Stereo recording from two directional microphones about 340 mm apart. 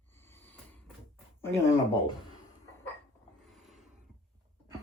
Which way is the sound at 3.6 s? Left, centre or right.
Centre.